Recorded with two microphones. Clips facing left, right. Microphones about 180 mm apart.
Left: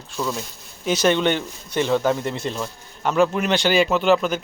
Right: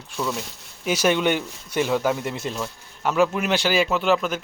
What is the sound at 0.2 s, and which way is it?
Speech, 5° right (ahead or behind).